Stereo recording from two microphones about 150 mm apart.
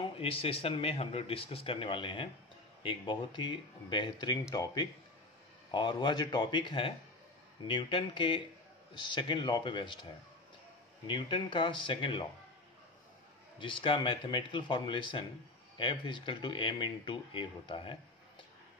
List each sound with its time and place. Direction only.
0.1 s speech: 40° left (ahead or behind)
11.1 s speech: 35° left (ahead or behind)
13.6 s speech: 35° left (ahead or behind)